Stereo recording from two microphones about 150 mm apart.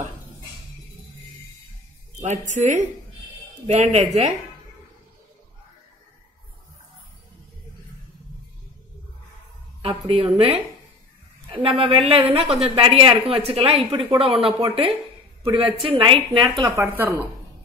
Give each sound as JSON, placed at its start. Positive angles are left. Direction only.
{"t": 2.2, "sound": "speech", "side_deg": -55}
{"t": 9.8, "sound": "speech", "side_deg": -40}
{"t": 15.5, "sound": "speech", "side_deg": -40}
{"t": 16.3, "sound": "speech", "side_deg": -25}
{"t": 16.7, "sound": "speech", "side_deg": -15}